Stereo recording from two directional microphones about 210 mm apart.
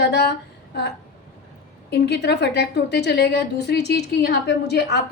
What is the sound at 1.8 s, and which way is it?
A woman's voice, 55° left (ahead or behind).